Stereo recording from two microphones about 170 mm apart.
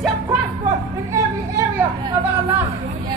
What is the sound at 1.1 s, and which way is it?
Chatter, 15° right (ahead or behind).